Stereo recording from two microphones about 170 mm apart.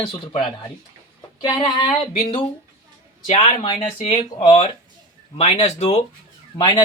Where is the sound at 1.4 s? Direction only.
25° left (ahead or behind).